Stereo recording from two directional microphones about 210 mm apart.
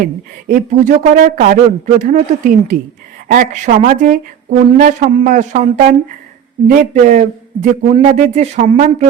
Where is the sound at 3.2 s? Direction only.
35° right (ahead or behind).